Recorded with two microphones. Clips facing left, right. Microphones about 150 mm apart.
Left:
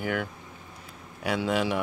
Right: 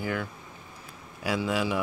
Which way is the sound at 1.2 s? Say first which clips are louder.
Left 1 dB; centre (ahead or behind).